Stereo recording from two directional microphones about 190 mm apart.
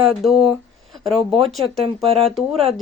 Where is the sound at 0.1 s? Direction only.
Centre (ahead or behind).